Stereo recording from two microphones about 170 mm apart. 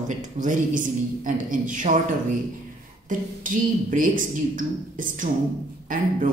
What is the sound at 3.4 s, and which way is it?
A man's voice, 55° right (ahead or behind).